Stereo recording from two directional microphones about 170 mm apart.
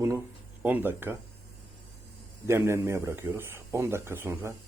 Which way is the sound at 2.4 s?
15° right (ahead or behind).